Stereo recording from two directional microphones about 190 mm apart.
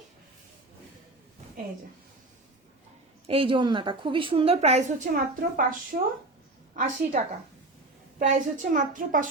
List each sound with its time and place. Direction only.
3.2 s a woman's voice: 30° right (ahead or behind); by 9.3 s 45° right (ahead or behind)